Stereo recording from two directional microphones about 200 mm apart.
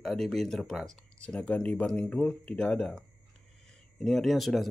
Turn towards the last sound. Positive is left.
turn(degrees=0)  # may be behind; listen again after turning